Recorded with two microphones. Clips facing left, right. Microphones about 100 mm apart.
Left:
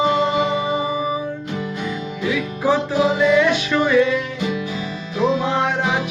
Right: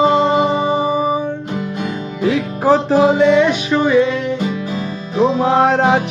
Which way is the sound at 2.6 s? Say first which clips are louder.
Right 6 dB; 40° right (ahead or behind).